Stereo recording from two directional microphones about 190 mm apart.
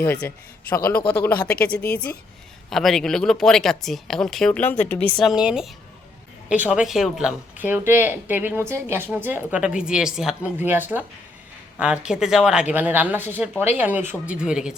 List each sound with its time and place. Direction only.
0.0 s a man's voice: 10° left (ahead or behind)
1.4 s speech: 50° left (ahead or behind)
1.6 s a man's voice: 5° left (ahead or behind)
5.2 s a woman's voice: 5° right (ahead or behind)